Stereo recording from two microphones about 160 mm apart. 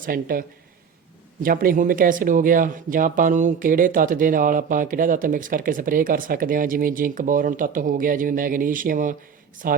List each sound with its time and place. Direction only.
0.0 s speech: 65° right (ahead or behind)